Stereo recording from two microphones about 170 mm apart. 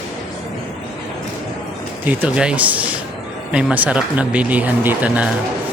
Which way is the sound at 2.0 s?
10° right (ahead or behind).